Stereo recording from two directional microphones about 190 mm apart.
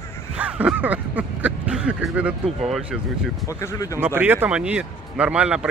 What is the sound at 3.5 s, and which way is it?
Speech, 15° left (ahead or behind).